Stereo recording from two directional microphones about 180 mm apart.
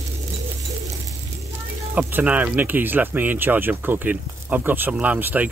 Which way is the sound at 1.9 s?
5° right (ahead or behind).